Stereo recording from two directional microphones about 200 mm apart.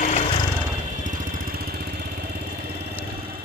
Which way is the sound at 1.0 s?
45° right (ahead or behind).